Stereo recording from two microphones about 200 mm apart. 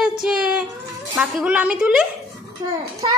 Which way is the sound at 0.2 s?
5° right (ahead or behind).